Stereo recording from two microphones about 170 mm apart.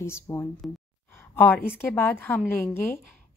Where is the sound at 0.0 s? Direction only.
15° left (ahead or behind).